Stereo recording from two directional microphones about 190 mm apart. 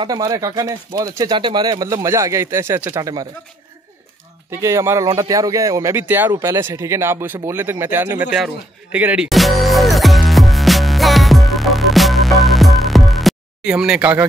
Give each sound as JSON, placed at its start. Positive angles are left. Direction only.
{"t": 0.0, "sound": "speech", "side_deg": -20}
{"t": 4.5, "sound": "speech", "side_deg": -15}
{"t": 8.9, "sound": "music", "side_deg": -5}